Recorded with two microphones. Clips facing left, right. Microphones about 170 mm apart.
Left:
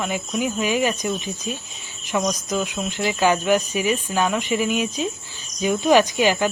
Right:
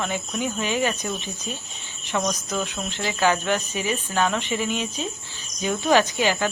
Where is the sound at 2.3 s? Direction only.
10° left (ahead or behind).